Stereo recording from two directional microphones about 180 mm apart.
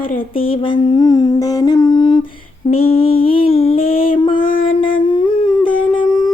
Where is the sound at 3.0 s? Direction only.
30° left (ahead or behind).